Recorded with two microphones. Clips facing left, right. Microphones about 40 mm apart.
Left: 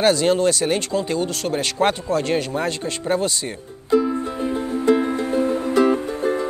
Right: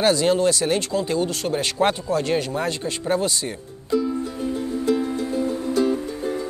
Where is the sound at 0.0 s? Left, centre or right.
Left.